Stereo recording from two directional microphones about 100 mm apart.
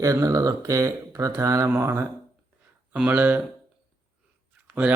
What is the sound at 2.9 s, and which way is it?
Speech, 15° right (ahead or behind).